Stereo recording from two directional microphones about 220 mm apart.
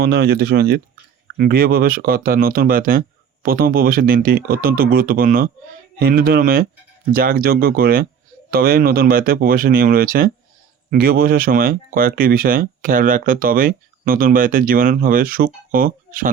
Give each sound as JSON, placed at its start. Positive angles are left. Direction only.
{"t": 0.0, "sound": "speech", "side_deg": -45}